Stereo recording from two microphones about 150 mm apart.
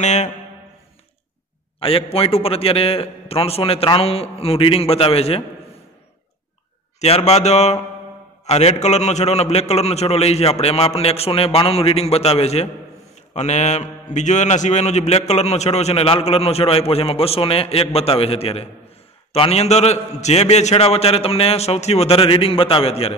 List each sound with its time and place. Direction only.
0.0 s a man's voice: 50° left (ahead or behind)
1.8 s a man's voice: 40° left (ahead or behind)
7.0 s a man's voice: 45° left (ahead or behind)